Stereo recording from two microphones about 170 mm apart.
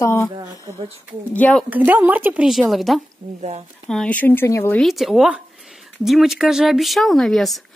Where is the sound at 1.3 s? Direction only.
5° left (ahead or behind).